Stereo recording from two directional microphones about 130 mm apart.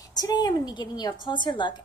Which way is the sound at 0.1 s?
30° left (ahead or behind).